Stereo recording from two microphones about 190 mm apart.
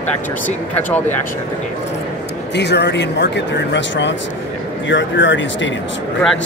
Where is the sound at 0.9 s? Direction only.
10° left (ahead or behind).